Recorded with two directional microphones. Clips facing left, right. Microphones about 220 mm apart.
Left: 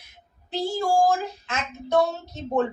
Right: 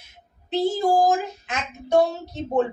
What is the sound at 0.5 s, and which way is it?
Speech, 20° right (ahead or behind).